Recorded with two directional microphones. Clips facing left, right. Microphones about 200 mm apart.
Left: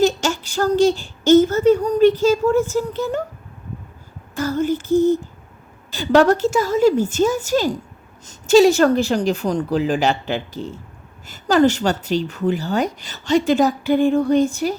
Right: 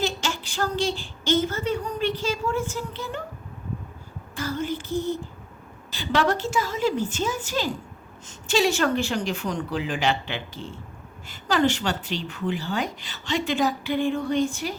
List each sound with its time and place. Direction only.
0.0 s speech: 45° left (ahead or behind)
4.4 s a woman's voice: 45° left (ahead or behind)